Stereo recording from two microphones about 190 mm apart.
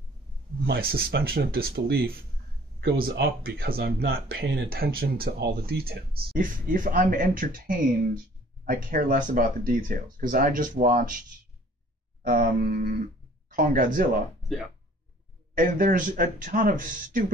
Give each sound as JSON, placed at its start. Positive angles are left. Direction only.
{"t": 0.7, "sound": "speech", "side_deg": -55}
{"t": 12.2, "sound": "speech", "side_deg": -45}
{"t": 15.5, "sound": "speech", "side_deg": -45}